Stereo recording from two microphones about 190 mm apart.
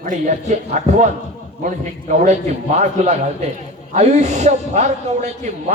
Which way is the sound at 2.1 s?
40° right (ahead or behind).